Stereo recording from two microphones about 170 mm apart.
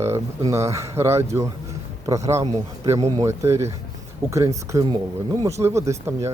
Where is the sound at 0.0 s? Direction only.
15° right (ahead or behind).